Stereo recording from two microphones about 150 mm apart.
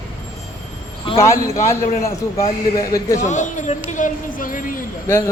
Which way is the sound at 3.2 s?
55° left (ahead or behind).